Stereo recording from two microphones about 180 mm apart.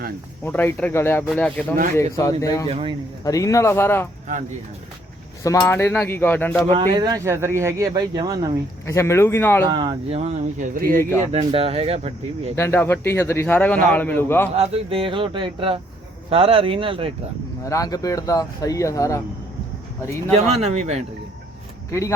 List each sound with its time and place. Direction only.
0.4 s a man's voice: 10° left (ahead or behind)
2.6 s speech: 30° right (ahead or behind)
3.2 s a man's voice: 20° left (ahead or behind)
5.4 s a man's voice: 15° left (ahead or behind)
6.7 s speech: 25° right (ahead or behind)
8.9 s a man's voice: 15° left (ahead or behind)
9.6 s speech: 25° right (ahead or behind)
10.2 s speech: 45° right (ahead or behind)
11.3 s speech: 35° right (ahead or behind)
12.5 s a man's voice: 10° left (ahead or behind)
14.5 s speech: 35° right (ahead or behind)
17.7 s a man's voice: 20° left (ahead or behind)
20.3 s speech: 35° right (ahead or behind)